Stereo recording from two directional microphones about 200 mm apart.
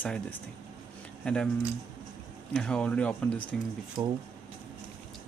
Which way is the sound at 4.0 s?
20° right (ahead or behind).